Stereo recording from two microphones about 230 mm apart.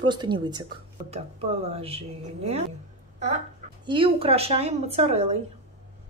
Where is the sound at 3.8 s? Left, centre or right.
Right.